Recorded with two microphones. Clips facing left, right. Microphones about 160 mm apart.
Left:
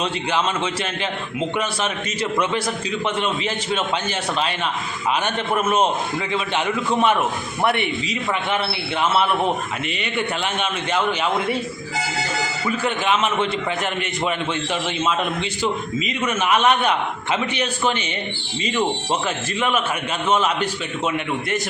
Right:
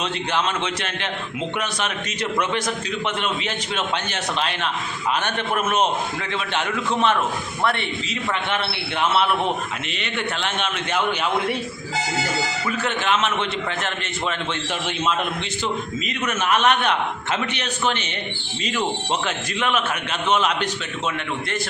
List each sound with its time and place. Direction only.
0.0 s a man's voice: 5° left (ahead or behind)
5.2 s a man's voice: 10° left (ahead or behind)
10.0 s a man's voice: 5° left (ahead or behind)
12.6 s a man's voice: 5° left (ahead or behind)
16.2 s a man's voice: 10° left (ahead or behind)